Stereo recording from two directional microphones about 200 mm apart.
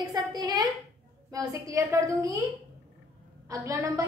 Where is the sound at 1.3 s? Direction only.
15° right (ahead or behind).